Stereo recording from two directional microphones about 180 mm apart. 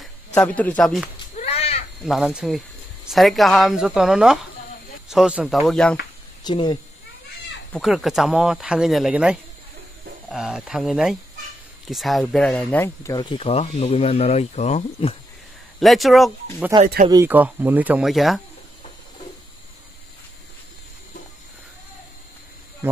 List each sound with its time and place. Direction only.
0.0 s speech: 5° left (ahead or behind)
1.3 s a sound: 35° left (ahead or behind)
2.0 s speech: 5° right (ahead or behind)
6.4 s speech: 25° left (ahead or behind)
7.7 s speech: centre (ahead or behind)
12.6 s speech: 15° left (ahead or behind)
13.3 s speech: 35° left (ahead or behind)
15.8 s speech: centre (ahead or behind)
16.8 s speech: 45° right (ahead or behind)
17.1 s speech: 15° right (ahead or behind)